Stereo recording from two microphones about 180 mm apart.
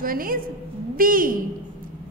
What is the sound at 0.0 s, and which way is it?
A woman's voice, 50° right (ahead or behind).